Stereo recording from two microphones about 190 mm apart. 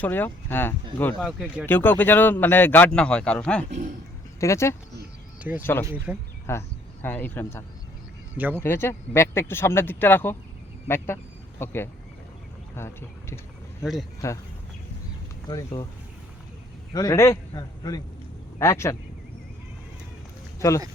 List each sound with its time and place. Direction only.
0.0 s speech: 10° left (ahead or behind)
1.3 s speech: 5° right (ahead or behind)
1.6 s speech: 10° left (ahead or behind)
3.7 s speech: 40° right (ahead or behind)
4.4 s speech: 15° left (ahead or behind)
5.5 s speech: 10° right (ahead or behind)
6.5 s speech: 10° left (ahead or behind)
8.4 s speech: 10° right (ahead or behind)
8.6 s speech: 10° left (ahead or behind)
15.4 s a man's voice: 20° left (ahead or behind)
16.9 s a man's voice: 20° left (ahead or behind)
20.6 s speech: 15° left (ahead or behind)